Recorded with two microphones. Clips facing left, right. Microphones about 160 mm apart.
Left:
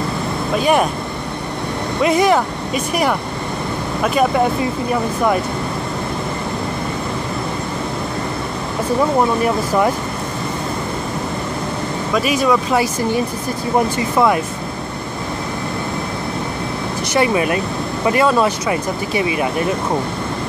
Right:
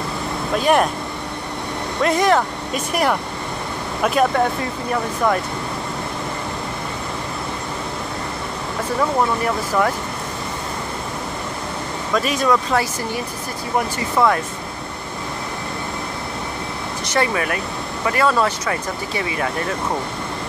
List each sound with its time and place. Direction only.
0.6 s speech: 5° left (ahead or behind)
2.0 s speech: 5° left (ahead or behind)
9.2 s speech: 20° left (ahead or behind)
12.1 s speech: 5° left (ahead or behind)
17.1 s speech: 15° left (ahead or behind)